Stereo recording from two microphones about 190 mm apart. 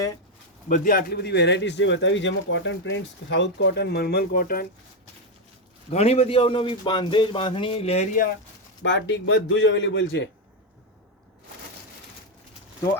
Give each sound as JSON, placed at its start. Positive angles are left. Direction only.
{"t": 0.7, "sound": "speech", "side_deg": 50}
{"t": 5.9, "sound": "speech", "side_deg": 35}
{"t": 8.1, "sound": "speech", "side_deg": 50}
{"t": 8.8, "sound": "a man's voice", "side_deg": 70}